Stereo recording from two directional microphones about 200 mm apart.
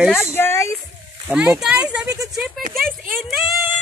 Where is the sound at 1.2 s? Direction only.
5° right (ahead or behind).